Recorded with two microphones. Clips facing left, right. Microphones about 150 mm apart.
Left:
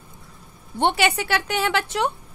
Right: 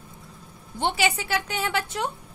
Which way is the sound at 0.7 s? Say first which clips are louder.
Left 4 dB; 60° left (ahead or behind).